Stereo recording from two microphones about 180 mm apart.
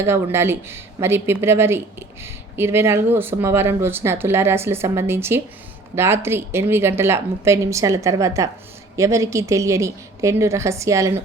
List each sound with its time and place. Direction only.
0.0 s speech: 15° right (ahead or behind)